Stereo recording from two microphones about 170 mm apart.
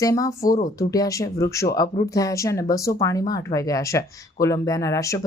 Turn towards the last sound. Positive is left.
turn(degrees=20)  # may be behind; listen again after turning